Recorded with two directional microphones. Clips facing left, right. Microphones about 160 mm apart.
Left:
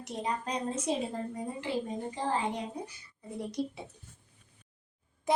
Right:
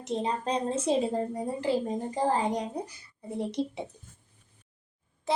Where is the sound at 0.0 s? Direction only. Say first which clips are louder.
Right 5 dB; 25° right (ahead or behind).